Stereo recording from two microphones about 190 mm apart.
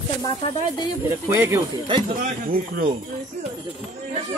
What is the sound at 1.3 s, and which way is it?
Speech, 15° right (ahead or behind).